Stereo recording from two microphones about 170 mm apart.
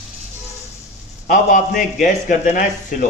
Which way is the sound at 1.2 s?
55° left (ahead or behind).